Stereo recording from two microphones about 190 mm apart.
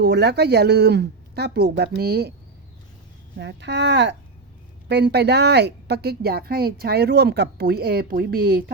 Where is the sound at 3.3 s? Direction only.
65° right (ahead or behind).